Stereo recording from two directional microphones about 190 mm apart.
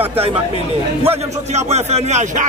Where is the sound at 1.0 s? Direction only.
35° right (ahead or behind).